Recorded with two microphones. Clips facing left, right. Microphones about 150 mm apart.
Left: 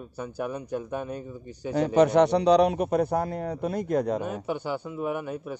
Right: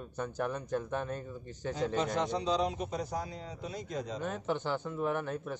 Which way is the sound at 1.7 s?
70° left (ahead or behind).